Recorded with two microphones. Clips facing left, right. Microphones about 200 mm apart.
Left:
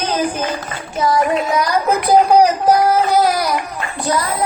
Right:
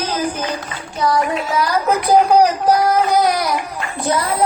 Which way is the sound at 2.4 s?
10° left (ahead or behind).